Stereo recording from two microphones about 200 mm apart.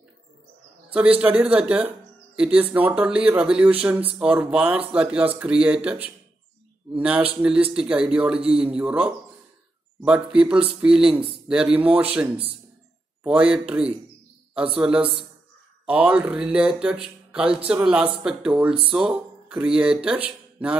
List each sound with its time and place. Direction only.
1.2 s speech: 5° right (ahead or behind)
8.4 s a man's voice: 30° right (ahead or behind)
8.6 s speech: 5° right (ahead or behind)
18.9 s music: 5° right (ahead or behind)